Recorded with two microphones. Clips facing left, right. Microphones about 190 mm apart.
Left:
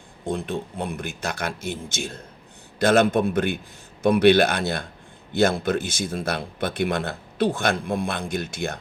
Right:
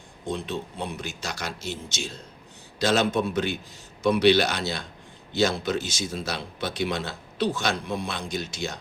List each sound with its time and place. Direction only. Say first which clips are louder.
0.3 s speech: left 3 dB; 55° left (ahead or behind)